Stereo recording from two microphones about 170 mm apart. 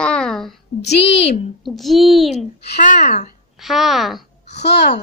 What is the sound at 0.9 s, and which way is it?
Speech, 90° left.